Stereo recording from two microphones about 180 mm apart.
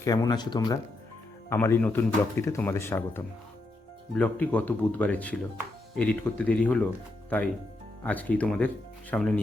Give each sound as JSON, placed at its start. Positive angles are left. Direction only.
{"t": 0.0, "sound": "speech", "side_deg": 20}
{"t": 1.5, "sound": "speech", "side_deg": 15}